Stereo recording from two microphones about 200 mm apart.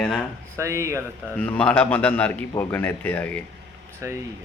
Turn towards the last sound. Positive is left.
turn(degrees=-15)  # may be behind; listen again after turning